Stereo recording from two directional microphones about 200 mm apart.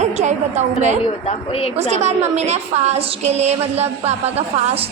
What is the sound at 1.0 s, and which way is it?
Speech, 30° left (ahead or behind).